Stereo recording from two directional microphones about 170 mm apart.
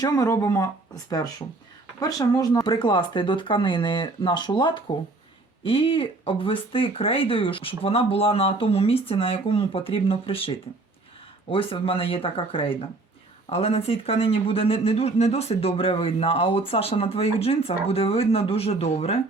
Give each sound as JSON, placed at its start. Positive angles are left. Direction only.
{"t": 0.0, "sound": "speech", "side_deg": 20}
{"t": 2.0, "sound": "speech", "side_deg": 20}
{"t": 11.5, "sound": "speech", "side_deg": 30}